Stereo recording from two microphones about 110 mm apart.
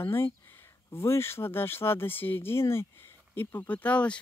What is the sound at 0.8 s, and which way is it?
A woman's voice, 25° left (ahead or behind).